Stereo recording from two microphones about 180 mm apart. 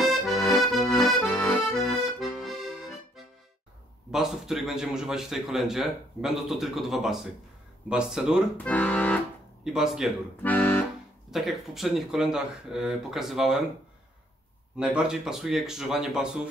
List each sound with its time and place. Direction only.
0.0 s accordion: centre (ahead or behind)
0.4 s accordion: 15° left (ahead or behind)
1.9 s accordion: centre (ahead or behind)
4.1 s a man's voice: centre (ahead or behind)
8.6 s speech: 10° left (ahead or behind)
9.7 s a man's voice: 5° right (ahead or behind)
10.4 s accordion: 10° left (ahead or behind)
11.2 s a man's voice: centre (ahead or behind)
14.8 s a man's voice: 5° right (ahead or behind)